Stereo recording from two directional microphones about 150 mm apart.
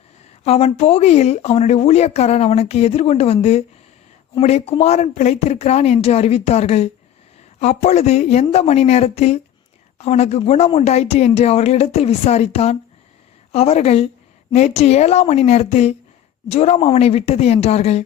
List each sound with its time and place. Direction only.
0.4 s speech: 45° left (ahead or behind)
4.4 s speech: 45° left (ahead or behind)